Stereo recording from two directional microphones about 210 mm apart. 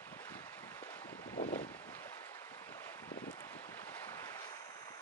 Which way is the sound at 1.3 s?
35° left (ahead or behind).